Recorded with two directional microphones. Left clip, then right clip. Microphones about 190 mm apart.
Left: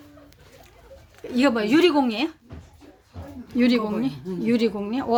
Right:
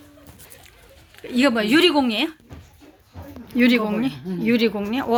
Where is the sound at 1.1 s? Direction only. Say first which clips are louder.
Right 2 dB; 5° right (ahead or behind).